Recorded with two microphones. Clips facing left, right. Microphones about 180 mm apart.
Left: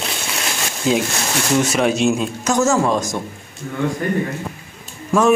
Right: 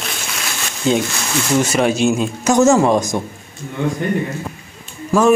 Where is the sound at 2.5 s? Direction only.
20° right (ahead or behind).